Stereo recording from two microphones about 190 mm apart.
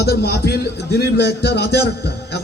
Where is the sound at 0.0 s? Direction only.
60° left (ahead or behind).